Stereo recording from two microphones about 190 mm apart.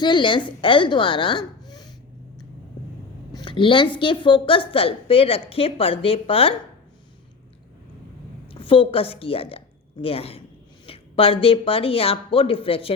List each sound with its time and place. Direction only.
0.0 s a woman's voice: 25° left (ahead or behind)
3.3 s a sound: 25° left (ahead or behind)
3.9 s a woman's voice: 25° left (ahead or behind)
8.4 s a woman's voice: 30° left (ahead or behind)